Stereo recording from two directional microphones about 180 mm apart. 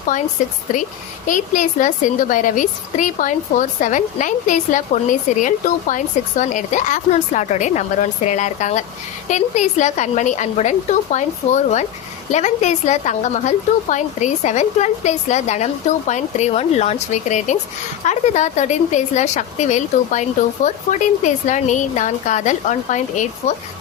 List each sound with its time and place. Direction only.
0.1 s a woman's voice: 45° left (ahead or behind)